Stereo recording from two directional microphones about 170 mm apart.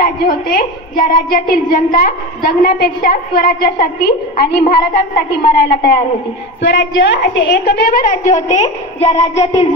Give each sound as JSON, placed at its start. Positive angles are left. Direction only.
{"t": 0.0, "sound": "a woman's voice", "side_deg": 60}
{"t": 6.6, "sound": "a woman's voice", "side_deg": 90}